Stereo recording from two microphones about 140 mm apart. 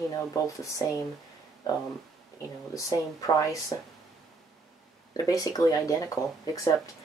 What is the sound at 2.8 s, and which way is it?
Speech, 25° left (ahead or behind).